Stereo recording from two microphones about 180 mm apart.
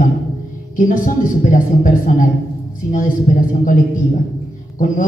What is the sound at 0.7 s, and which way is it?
A woman's voice, 45° left (ahead or behind).